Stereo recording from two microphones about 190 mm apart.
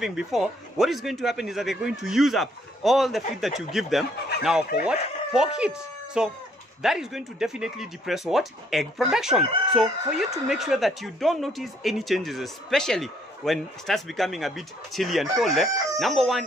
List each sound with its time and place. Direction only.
0.0 s speech: centre (ahead or behind)